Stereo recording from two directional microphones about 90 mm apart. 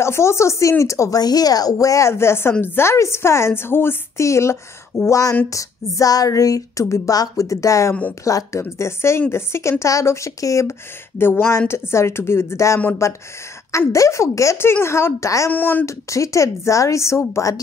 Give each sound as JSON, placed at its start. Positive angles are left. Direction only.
{"t": 0.0, "sound": "a woman's voice", "side_deg": 30}
{"t": 15.5, "sound": "a woman's voice", "side_deg": 20}
{"t": 15.8, "sound": "speech", "side_deg": 35}